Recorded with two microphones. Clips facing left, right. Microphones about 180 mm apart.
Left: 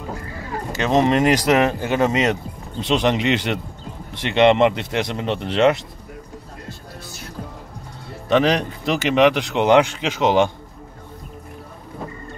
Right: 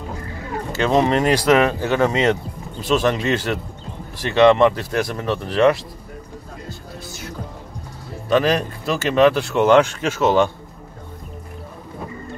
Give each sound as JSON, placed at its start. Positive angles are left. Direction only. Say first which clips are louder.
{"t": 0.7, "sound": "speech", "louder": "even", "side_deg": 15}
{"t": 8.3, "sound": "speech", "louder": "even", "side_deg": 20}